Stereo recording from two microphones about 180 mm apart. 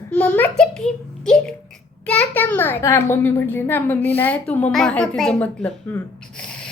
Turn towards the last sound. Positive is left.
turn(degrees=5)  # may be behind; listen again after turning